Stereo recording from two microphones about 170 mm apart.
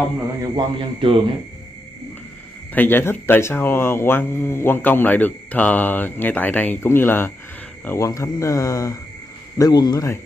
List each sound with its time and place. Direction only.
0.4 s a man's voice: 30° right (ahead or behind)
2.7 s speech: 10° left (ahead or behind)